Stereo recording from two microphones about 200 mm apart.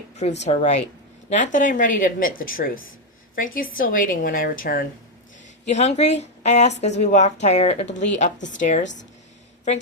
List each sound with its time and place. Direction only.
0.4 s a woman's voice: 35° left (ahead or behind)
5.6 s a woman's voice: 35° left (ahead or behind)